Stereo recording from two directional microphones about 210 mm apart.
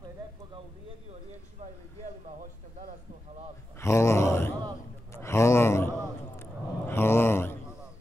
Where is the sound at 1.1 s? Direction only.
30° right (ahead or behind).